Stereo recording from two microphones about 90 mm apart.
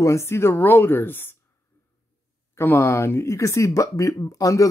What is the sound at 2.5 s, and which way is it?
Speech, 25° left (ahead or behind).